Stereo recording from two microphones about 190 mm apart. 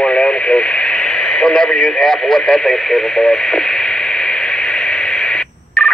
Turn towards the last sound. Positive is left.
turn(degrees=5)  # may be behind; listen again after turning